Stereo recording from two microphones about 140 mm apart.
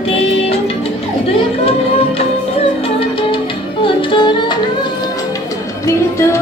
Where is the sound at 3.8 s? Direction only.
35° left (ahead or behind).